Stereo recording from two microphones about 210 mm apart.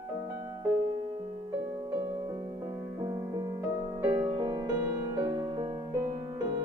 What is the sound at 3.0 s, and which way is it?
Music, 15° right (ahead or behind).